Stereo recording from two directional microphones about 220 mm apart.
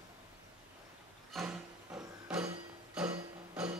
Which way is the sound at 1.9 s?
10° right (ahead or behind).